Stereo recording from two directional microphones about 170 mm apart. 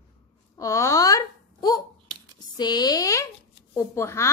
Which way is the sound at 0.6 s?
20° left (ahead or behind).